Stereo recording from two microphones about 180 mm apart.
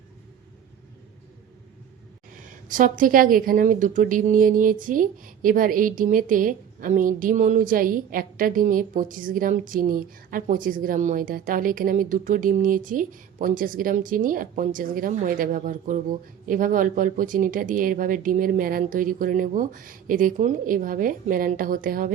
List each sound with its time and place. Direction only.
2.3 s a woman's voice: 45° right (ahead or behind)